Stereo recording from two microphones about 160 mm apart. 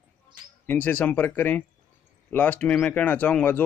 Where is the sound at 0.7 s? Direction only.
10° left (ahead or behind).